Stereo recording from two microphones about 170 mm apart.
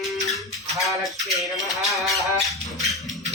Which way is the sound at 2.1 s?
20° left (ahead or behind).